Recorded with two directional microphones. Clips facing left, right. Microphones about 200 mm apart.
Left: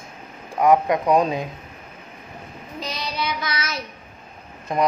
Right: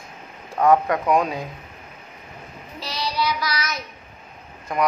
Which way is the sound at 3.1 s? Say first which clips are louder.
Right 3 dB; 25° left (ahead or behind).